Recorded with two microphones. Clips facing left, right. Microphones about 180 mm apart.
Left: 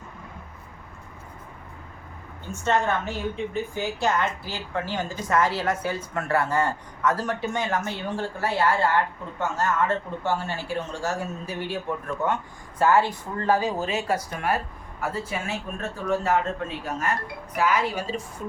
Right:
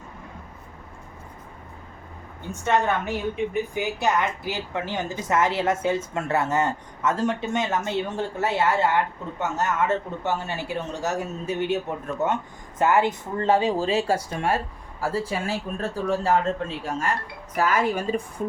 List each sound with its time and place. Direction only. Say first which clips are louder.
2.5 s a woman's voice: right 1 dB; 15° right (ahead or behind); by 17.2 s 30° right (ahead or behind)
17.6 s a woman's voice: right 2 dB; 45° right (ahead or behind)